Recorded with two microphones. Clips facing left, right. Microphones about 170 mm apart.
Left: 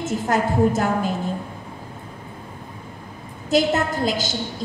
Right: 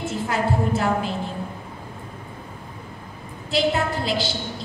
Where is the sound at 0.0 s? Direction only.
45° left (ahead or behind).